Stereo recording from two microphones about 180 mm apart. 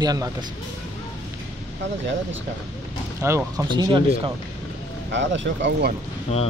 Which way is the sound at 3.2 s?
15° right (ahead or behind).